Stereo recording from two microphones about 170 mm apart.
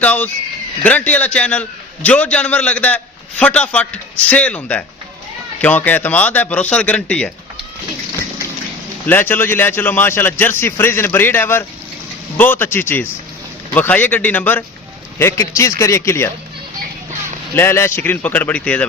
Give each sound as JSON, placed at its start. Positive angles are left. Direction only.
{"t": 0.0, "sound": "a man's voice", "side_deg": 10}
{"t": 9.0, "sound": "a man's voice", "side_deg": 10}
{"t": 17.5, "sound": "a man's voice", "side_deg": 15}